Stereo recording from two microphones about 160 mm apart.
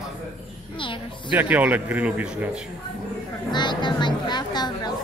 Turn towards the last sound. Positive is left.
turn(degrees=25)  # may be behind; listen again after turning